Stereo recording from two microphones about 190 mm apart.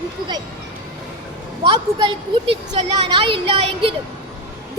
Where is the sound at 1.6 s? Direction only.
20° right (ahead or behind).